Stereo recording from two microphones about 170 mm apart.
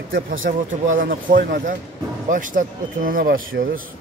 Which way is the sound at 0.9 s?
55° right (ahead or behind).